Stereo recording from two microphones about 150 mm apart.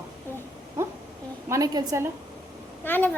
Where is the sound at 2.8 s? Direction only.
10° left (ahead or behind).